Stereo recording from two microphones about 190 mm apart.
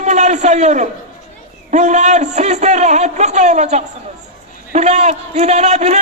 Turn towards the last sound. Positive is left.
turn(degrees=-35)  # may be behind; listen again after turning